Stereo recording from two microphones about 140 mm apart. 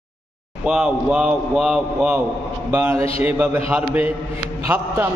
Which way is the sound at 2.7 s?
20° right (ahead or behind).